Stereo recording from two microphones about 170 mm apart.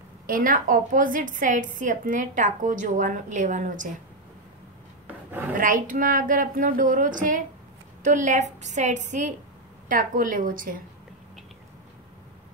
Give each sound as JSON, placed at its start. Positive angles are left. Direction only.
{"t": 0.3, "sound": "a woman's voice", "side_deg": -55}
{"t": 5.0, "sound": "rub", "side_deg": -10}
{"t": 5.5, "sound": "a woman's voice", "side_deg": -50}